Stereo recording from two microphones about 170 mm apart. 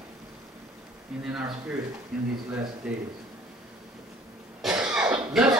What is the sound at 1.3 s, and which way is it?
Speech, 5° right (ahead or behind).